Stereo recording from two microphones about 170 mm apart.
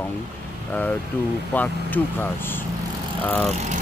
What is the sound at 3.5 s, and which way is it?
Speech, 40° right (ahead or behind).